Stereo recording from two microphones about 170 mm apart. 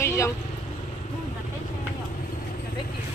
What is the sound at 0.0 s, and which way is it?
Vehicle, 15° left (ahead or behind).